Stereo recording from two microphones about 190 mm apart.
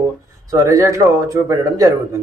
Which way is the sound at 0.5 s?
15° right (ahead or behind).